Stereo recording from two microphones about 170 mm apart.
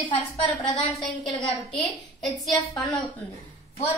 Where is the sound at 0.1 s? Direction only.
25° left (ahead or behind).